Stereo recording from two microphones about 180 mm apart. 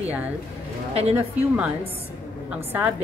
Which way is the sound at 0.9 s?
35° right (ahead or behind).